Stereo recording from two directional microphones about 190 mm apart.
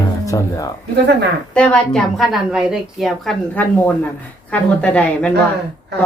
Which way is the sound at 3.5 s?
10° left (ahead or behind).